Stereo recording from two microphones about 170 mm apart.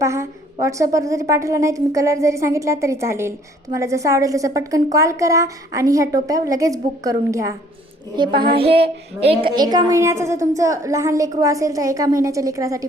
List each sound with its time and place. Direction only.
0.0 s a woman's voice: 15° right (ahead or behind)
8.5 s child singing: 35° right (ahead or behind)
9.5 s a woman's voice: 25° right (ahead or behind)